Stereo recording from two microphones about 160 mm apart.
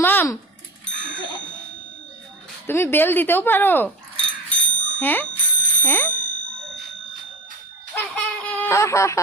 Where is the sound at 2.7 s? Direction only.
15° left (ahead or behind).